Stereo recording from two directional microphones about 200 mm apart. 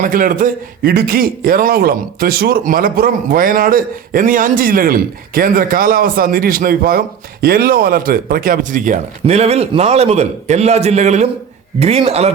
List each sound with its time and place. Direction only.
0.0 s a man's voice: 45° right (ahead or behind)